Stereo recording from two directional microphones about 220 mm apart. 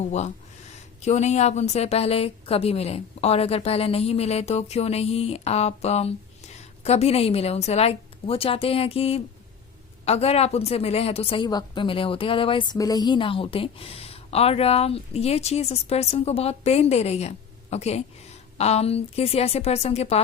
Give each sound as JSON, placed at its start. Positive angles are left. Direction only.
{"t": 1.0, "sound": "a woman's voice", "side_deg": 30}